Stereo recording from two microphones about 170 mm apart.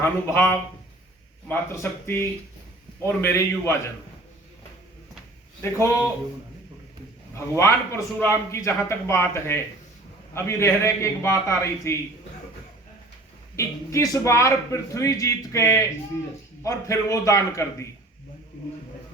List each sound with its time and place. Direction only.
0.0 s a man's voice: 15° left (ahead or behind)
7.3 s a man's voice: 15° left (ahead or behind)
13.6 s a man's voice: 20° left (ahead or behind)